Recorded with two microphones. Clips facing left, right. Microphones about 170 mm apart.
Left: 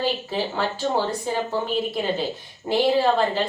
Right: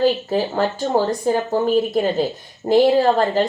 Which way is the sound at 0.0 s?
45° right (ahead or behind).